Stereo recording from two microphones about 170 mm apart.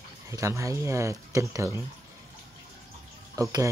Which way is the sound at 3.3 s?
20° right (ahead or behind).